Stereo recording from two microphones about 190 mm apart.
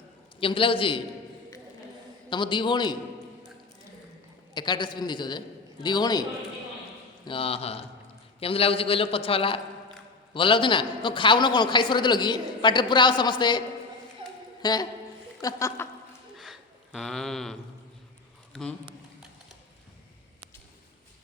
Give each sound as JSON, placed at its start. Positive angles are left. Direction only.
{"t": 0.3, "sound": "a man's voice", "side_deg": 30}
{"t": 2.3, "sound": "a man's voice", "side_deg": 25}
{"t": 4.5, "sound": "a man's voice", "side_deg": 25}
{"t": 7.3, "sound": "a man's voice", "side_deg": 30}
{"t": 14.6, "sound": "a woman's voice", "side_deg": 20}
{"t": 16.4, "sound": "a sound", "side_deg": 0}
{"t": 18.5, "sound": "a man's voice", "side_deg": 5}